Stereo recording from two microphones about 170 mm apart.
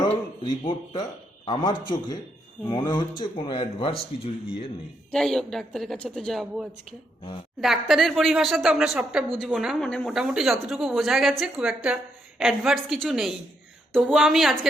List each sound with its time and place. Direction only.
0.4 s speech: 25° left (ahead or behind)
5.1 s a woman's voice: 5° left (ahead or behind)